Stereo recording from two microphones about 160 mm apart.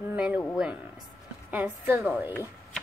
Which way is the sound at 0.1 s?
10° right (ahead or behind).